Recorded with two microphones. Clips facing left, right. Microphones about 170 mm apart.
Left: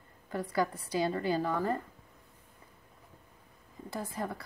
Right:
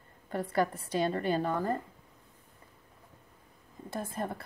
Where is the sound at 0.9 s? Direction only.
55° right (ahead or behind).